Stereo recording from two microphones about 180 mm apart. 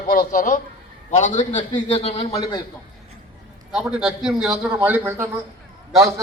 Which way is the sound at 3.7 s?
5° right (ahead or behind).